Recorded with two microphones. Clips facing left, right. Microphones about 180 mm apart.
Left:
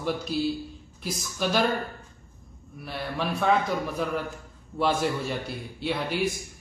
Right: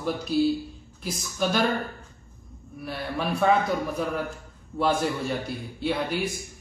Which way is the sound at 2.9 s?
Centre (ahead or behind).